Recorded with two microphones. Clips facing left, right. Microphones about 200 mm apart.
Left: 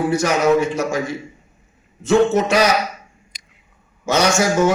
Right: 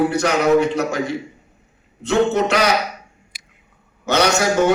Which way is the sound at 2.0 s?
65° right (ahead or behind).